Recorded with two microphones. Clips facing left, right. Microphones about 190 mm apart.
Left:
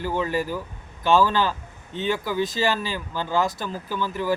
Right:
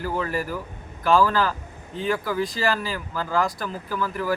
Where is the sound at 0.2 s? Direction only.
25° left (ahead or behind).